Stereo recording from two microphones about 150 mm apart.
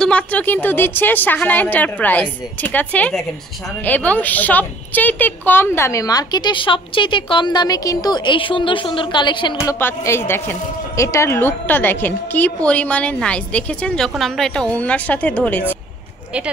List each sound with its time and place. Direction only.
0.0 s a woman's voice: 10° left (ahead or behind); by 9.8 s 30° left (ahead or behind)
9.8 s a woman's voice: 15° left (ahead or behind)